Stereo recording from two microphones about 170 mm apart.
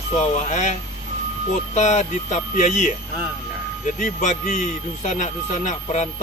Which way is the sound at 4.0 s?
50° left (ahead or behind).